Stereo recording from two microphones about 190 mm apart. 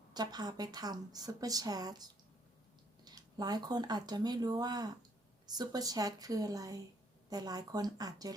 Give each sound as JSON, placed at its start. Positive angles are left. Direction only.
{"t": 0.1, "sound": "speech", "side_deg": -20}